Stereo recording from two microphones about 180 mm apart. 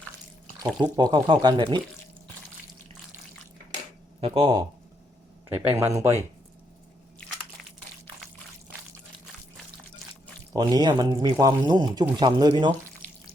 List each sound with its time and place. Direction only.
0.8 s speech: 25° right (ahead or behind)
4.2 s speech: 30° right (ahead or behind)
5.5 s speech: 10° right (ahead or behind)
10.5 s speech: 20° right (ahead or behind)